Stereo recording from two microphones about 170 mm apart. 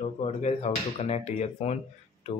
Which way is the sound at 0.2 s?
40° left (ahead or behind).